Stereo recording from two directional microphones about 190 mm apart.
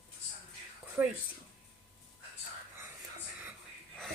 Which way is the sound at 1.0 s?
15° right (ahead or behind).